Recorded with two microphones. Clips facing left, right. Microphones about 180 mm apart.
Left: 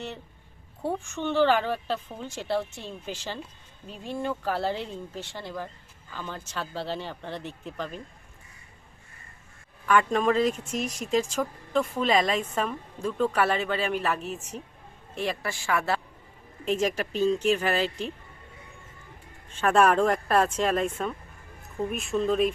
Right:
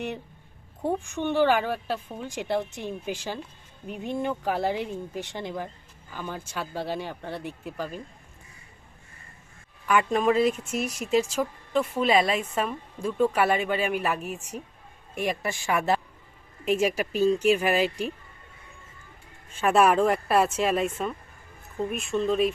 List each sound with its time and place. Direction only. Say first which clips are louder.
0.8 s speech: right 2 dB; 15° right (ahead or behind)
9.8 s speech: even; 10° right (ahead or behind)
19.5 s speech: right 1 dB; 10° right (ahead or behind)